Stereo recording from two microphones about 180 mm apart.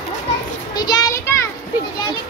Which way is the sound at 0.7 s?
20° left (ahead or behind).